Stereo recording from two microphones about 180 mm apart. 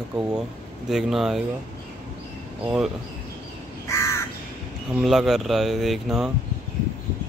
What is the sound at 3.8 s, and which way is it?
Crow, 15° left (ahead or behind).